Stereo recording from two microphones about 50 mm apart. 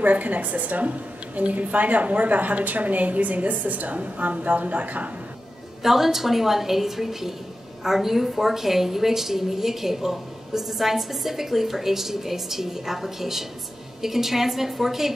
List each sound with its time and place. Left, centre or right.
0.0 s a woman's voice: right
5.8 s a woman's voice: centre